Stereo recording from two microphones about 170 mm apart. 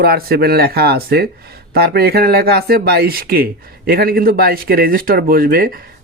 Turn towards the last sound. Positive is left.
turn(degrees=-60)  # may be behind; listen again after turning